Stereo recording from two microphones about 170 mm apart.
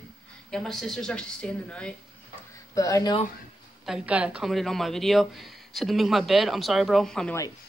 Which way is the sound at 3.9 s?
5° right (ahead or behind).